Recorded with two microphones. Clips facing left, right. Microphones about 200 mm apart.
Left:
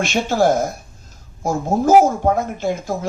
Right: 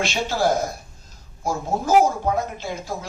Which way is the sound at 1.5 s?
50° left (ahead or behind).